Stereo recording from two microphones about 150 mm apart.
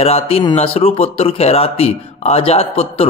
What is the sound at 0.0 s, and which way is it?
A man's voice, 40° left (ahead or behind).